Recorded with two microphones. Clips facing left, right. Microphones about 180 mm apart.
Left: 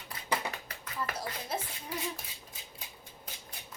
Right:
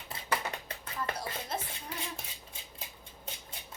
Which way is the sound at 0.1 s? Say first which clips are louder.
Right 1 dB; 30° right (ahead or behind).